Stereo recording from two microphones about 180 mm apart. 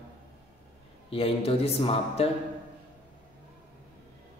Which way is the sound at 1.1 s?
30° left (ahead or behind).